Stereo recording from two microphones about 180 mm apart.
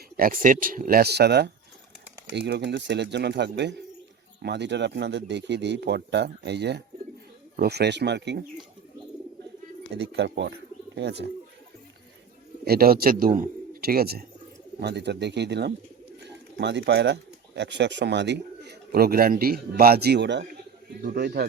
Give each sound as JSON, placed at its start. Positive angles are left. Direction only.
{"t": 0.2, "sound": "speech", "side_deg": -50}
{"t": 10.0, "sound": "speech", "side_deg": -75}
{"t": 12.6, "sound": "a man's voice", "side_deg": -55}
{"t": 14.8, "sound": "speech", "side_deg": -70}
{"t": 21.0, "sound": "speech", "side_deg": -60}